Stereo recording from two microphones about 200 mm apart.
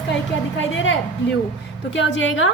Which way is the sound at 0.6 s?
70° left (ahead or behind).